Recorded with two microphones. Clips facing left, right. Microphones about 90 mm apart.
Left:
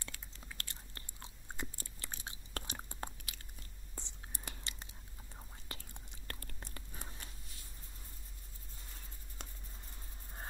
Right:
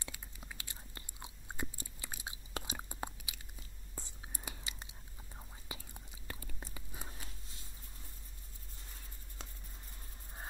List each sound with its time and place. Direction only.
0.0 s biting: 15° right (ahead or behind)
5.3 s whispering: 10° right (ahead or behind)